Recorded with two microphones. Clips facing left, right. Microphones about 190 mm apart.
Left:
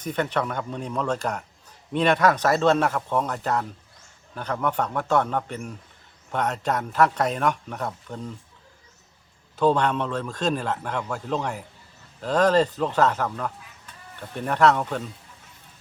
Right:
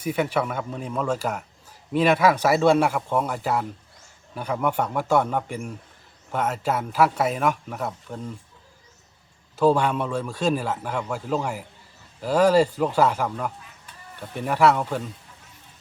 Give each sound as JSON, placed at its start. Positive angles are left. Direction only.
{"t": 0.0, "sound": "a man's voice", "side_deg": -10}
{"t": 9.6, "sound": "a man's voice", "side_deg": -5}